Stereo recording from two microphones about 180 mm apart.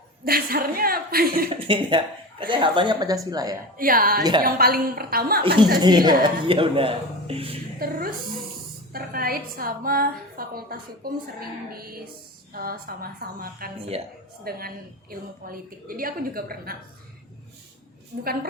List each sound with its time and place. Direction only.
0.3 s a woman's voice: 55° right (ahead or behind)
1.5 s speech: 30° right (ahead or behind)
3.8 s a woman's voice: 50° right (ahead or behind)
4.2 s speech: 25° right (ahead or behind)
4.4 s a woman's voice: 55° right (ahead or behind)
5.8 s speech: 25° right (ahead or behind)
7.8 s a woman's voice: 55° right (ahead or behind)